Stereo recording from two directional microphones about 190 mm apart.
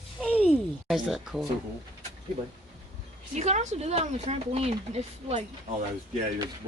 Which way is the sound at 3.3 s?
35° right (ahead or behind).